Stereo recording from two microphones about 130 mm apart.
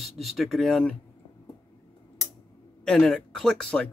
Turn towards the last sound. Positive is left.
turn(degrees=5)  # may be behind; listen again after turning